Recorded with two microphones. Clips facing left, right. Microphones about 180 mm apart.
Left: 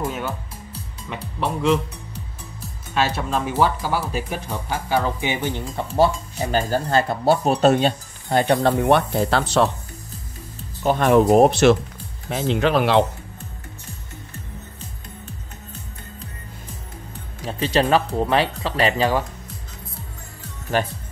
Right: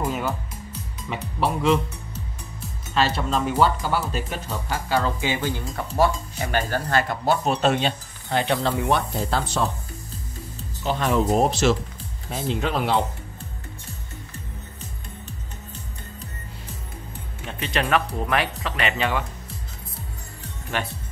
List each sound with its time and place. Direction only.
1.1 s speech: centre (ahead or behind); by 9.7 s 75° left (ahead or behind)
10.8 s speech: 50° left (ahead or behind)
12.3 s speech: 80° left
17.4 s speech: 35° left (ahead or behind)
20.7 s speech: 40° left (ahead or behind)